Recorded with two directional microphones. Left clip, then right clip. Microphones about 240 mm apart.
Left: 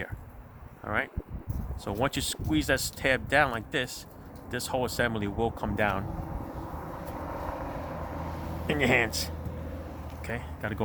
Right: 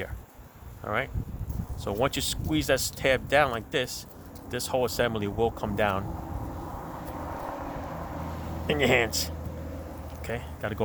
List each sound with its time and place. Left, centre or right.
0.9 s speech: centre
7.0 s vehicle: left
8.6 s speech: centre